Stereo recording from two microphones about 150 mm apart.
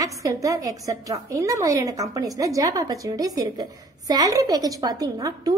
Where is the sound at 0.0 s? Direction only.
20° right (ahead or behind).